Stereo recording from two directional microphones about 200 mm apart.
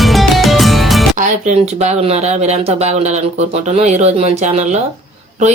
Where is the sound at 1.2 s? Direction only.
35° right (ahead or behind).